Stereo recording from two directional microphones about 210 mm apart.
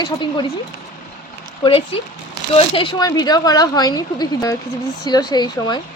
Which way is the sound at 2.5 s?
25° left (ahead or behind).